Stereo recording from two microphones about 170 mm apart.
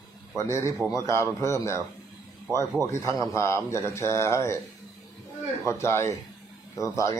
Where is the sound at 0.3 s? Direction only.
15° left (ahead or behind).